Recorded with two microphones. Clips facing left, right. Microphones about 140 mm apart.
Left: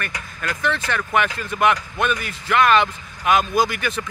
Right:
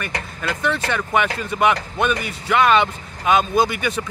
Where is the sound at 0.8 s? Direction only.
5° right (ahead or behind).